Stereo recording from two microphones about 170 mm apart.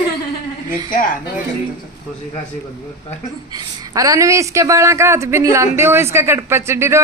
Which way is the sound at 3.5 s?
20° right (ahead or behind).